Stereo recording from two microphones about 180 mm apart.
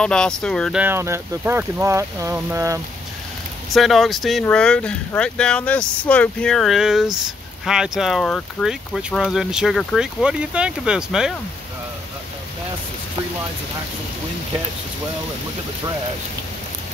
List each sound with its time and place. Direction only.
0.0 s speech: 5° left (ahead or behind)
0.7 s speech: 15° right (ahead or behind)
3.7 s speech: centre (ahead or behind)